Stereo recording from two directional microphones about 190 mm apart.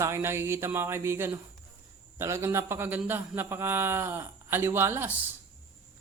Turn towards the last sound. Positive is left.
turn(degrees=-10)  # may be behind; listen again after turning